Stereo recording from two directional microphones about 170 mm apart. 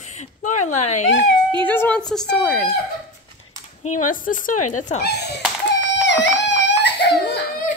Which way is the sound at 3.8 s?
55° left (ahead or behind).